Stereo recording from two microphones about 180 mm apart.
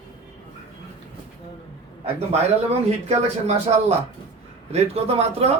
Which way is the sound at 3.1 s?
35° right (ahead or behind).